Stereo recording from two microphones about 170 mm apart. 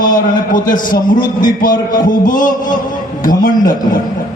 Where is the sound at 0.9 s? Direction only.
55° left (ahead or behind).